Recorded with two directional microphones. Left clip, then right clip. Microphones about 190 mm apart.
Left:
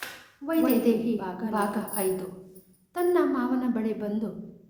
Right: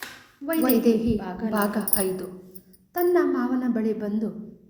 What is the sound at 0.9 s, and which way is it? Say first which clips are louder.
Speech: right 3 dB; 25° right (ahead or behind).